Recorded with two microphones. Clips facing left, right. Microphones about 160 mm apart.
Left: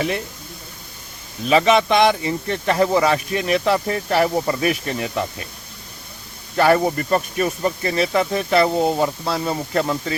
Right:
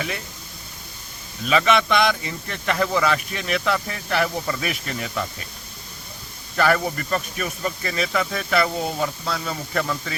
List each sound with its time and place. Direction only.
1.5 s speech: 35° left (ahead or behind)
6.6 s speech: 35° left (ahead or behind)